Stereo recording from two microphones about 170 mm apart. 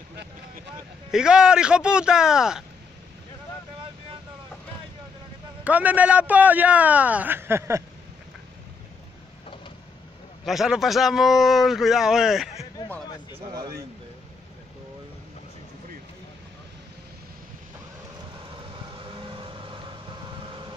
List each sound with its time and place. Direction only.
1.1 s a man's voice: 5° right (ahead or behind)
5.6 s a man's voice: 10° right (ahead or behind)
10.4 s a man's voice: centre (ahead or behind)
18.7 s vehicle: 30° right (ahead or behind)